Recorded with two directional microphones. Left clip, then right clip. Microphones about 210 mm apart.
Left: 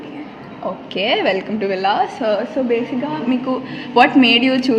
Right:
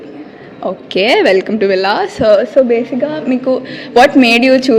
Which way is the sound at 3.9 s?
50° right (ahead or behind).